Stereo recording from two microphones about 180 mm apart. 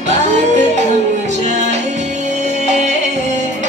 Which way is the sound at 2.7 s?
40° right (ahead or behind).